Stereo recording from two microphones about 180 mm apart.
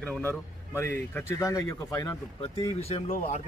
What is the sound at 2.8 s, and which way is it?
Speech, 35° left (ahead or behind).